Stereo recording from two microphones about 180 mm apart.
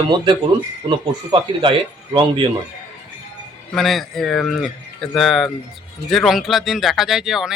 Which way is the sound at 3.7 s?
Centre (ahead or behind).